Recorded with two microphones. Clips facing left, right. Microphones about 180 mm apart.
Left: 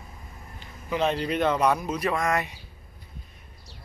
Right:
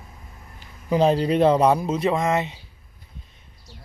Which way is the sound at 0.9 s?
35° right (ahead or behind).